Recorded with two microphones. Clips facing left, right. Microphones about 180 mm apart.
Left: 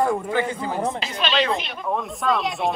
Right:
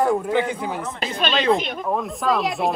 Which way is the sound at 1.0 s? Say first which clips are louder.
Right 2 dB; 50° right (ahead or behind).